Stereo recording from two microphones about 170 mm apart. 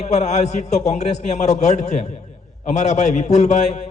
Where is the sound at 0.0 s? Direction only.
45° left (ahead or behind).